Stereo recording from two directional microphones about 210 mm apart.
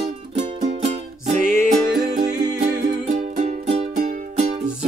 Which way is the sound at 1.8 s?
20° right (ahead or behind).